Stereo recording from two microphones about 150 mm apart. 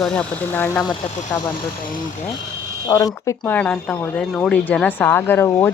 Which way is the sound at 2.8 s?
25° left (ahead or behind).